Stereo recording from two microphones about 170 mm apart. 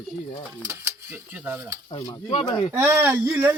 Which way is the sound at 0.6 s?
15° right (ahead or behind).